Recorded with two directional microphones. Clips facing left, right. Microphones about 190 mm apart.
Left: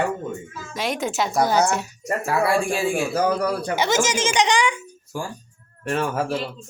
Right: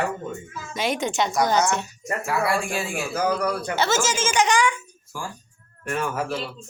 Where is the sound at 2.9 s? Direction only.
30° left (ahead or behind).